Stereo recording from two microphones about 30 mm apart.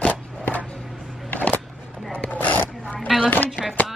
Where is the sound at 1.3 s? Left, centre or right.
Left.